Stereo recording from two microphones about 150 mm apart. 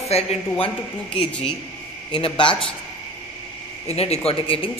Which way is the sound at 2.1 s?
35° left (ahead or behind).